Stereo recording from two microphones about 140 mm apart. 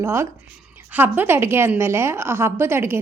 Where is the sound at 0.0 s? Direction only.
20° right (ahead or behind).